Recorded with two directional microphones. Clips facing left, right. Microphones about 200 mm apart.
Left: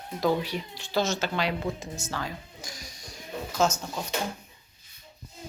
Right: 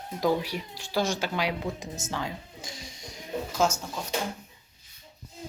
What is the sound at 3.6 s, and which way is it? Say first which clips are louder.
Speech: left 1 dB; 10° right (ahead or behind).